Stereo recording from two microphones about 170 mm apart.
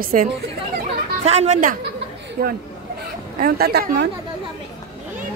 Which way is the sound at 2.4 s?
65° right (ahead or behind).